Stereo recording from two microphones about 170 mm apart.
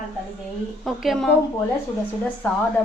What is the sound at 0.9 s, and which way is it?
Dishes, centre (ahead or behind).